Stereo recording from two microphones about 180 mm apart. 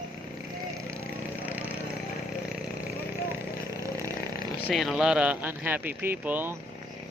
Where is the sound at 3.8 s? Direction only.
20° right (ahead or behind).